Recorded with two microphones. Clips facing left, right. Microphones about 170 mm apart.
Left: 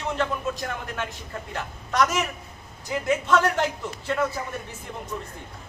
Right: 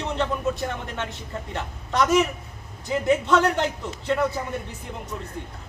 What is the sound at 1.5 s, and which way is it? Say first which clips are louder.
Speech: even; 20° right (ahead or behind).